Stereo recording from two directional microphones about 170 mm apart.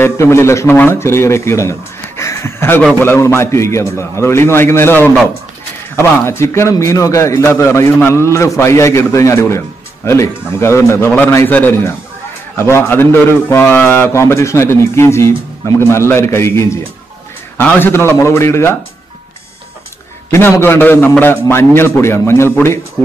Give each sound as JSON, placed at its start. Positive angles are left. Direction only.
{"t": 0.0, "sound": "a man's voice", "side_deg": 15}
{"t": 20.3, "sound": "a man's voice", "side_deg": 15}